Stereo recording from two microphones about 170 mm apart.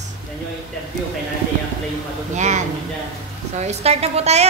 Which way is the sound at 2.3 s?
40° right (ahead or behind).